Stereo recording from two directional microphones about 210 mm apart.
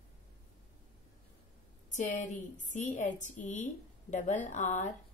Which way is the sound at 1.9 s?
35° left (ahead or behind).